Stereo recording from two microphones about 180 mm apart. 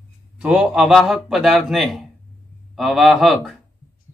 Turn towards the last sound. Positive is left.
turn(degrees=0)  # may be behind; listen again after turning